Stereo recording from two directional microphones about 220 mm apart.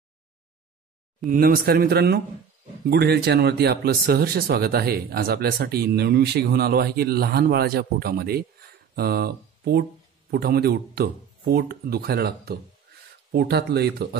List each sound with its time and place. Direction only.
1.2 s speech: 40° right (ahead or behind)